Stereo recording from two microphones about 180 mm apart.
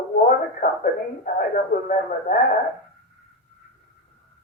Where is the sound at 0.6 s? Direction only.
55° left (ahead or behind).